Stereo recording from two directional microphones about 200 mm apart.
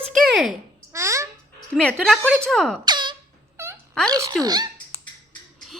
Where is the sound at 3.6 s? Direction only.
15° right (ahead or behind).